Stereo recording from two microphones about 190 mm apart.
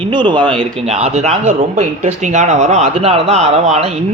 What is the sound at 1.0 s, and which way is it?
Speech, 35° right (ahead or behind).